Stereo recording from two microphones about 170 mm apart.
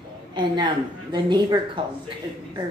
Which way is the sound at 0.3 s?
25° right (ahead or behind).